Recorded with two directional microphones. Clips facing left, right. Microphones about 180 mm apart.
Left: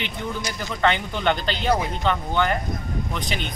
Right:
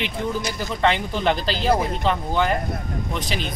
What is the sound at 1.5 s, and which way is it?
Speech, 35° right (ahead or behind).